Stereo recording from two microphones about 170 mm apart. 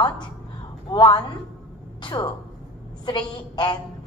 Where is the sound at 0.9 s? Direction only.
25° left (ahead or behind).